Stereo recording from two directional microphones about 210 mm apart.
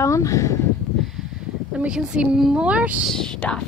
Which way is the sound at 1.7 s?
5° right (ahead or behind).